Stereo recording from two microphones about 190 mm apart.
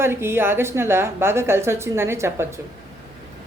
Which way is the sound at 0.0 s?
15° right (ahead or behind).